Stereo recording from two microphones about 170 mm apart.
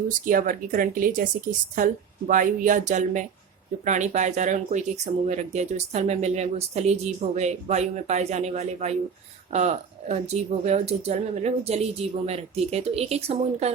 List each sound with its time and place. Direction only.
0.1 s speech: 50° right (ahead or behind)